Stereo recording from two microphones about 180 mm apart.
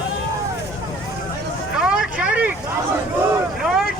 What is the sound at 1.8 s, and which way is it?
Vehicle, 5° right (ahead or behind).